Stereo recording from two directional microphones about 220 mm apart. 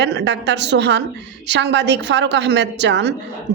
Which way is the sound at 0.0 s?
50° right (ahead or behind).